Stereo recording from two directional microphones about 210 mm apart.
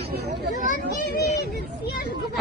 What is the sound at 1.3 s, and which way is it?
Speech, 50° left (ahead or behind).